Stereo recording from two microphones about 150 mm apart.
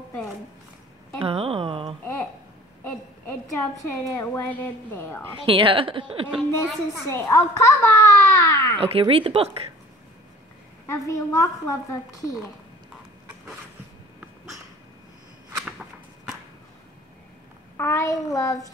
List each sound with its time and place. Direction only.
1.2 s a sound: 40° right (ahead or behind)
2.8 s a woman's voice: 15° left (ahead or behind)
5.4 s a woman's voice: 35° right (ahead or behind)
7.1 s a child's voice: 15° left (ahead or behind)
8.7 s a woman's voice: 40° right (ahead or behind)
10.9 s a woman's voice: 20° left (ahead or behind)
17.7 s a woman's voice: 20° left (ahead or behind)